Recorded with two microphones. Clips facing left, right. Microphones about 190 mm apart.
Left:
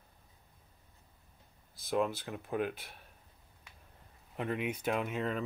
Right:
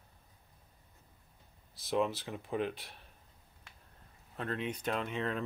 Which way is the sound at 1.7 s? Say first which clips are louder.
Even; centre (ahead or behind).